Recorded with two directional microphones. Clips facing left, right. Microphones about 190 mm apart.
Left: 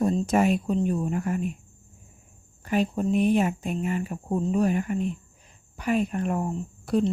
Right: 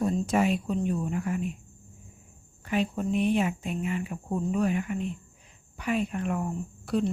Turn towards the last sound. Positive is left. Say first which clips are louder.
# left 3 dB
turn(degrees=40)  # may be behind; listen again after turning